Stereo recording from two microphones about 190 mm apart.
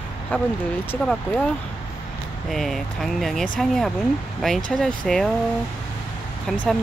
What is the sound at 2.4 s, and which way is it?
Speech, centre (ahead or behind).